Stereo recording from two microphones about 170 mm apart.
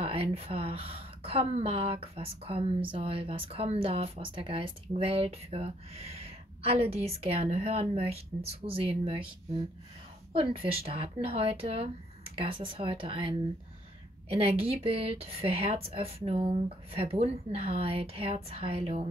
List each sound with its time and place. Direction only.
0.0 s speech: 35° right (ahead or behind)
10.3 s speech: 35° right (ahead or behind)